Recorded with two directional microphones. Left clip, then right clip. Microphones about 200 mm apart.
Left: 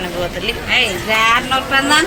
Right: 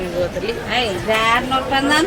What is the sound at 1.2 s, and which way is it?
Speech, 30° right (ahead or behind).